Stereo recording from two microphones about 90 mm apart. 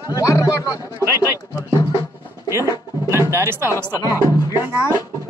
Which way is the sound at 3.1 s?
35° right (ahead or behind).